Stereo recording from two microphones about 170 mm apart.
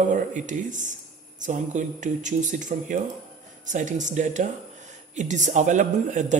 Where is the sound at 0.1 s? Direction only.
50° right (ahead or behind).